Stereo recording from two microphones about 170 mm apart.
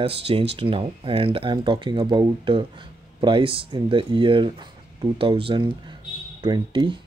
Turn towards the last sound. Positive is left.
turn(degrees=-30)  # may be behind; listen again after turning